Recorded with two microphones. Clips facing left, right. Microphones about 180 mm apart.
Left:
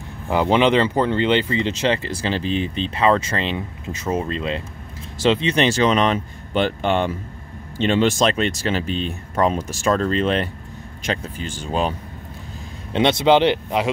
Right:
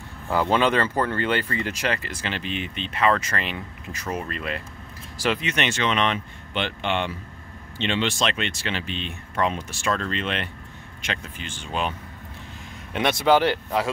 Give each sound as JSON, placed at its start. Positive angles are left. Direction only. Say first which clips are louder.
{"t": 0.3, "sound": "speech", "louder": "left 4 dB", "side_deg": 20}
{"t": 12.9, "sound": "speech", "louder": "left 4 dB", "side_deg": 25}